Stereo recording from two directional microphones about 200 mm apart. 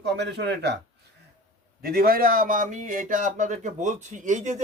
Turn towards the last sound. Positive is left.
turn(degrees=-40)  # may be behind; listen again after turning